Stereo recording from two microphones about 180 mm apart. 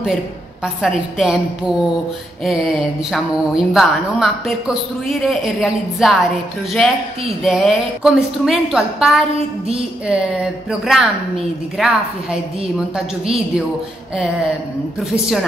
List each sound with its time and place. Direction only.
0.8 s a woman's voice: centre (ahead or behind)
2.4 s a woman's voice: centre (ahead or behind)